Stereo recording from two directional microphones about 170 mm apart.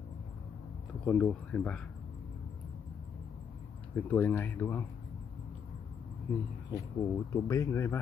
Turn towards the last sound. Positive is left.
turn(degrees=15)  # may be behind; listen again after turning